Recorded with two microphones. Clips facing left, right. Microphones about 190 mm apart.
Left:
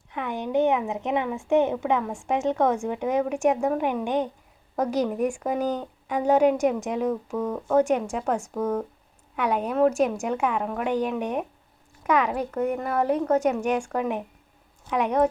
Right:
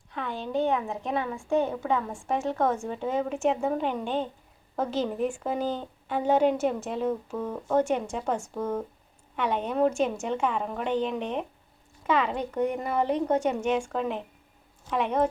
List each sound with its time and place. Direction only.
0.1 s a woman's voice: 20° left (ahead or behind)